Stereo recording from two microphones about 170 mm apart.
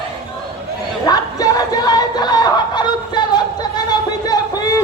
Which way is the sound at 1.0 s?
20° left (ahead or behind).